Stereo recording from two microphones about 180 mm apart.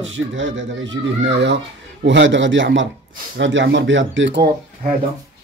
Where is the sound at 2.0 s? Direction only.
90° right.